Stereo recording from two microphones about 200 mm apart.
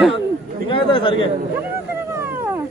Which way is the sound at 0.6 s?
25° left (ahead or behind).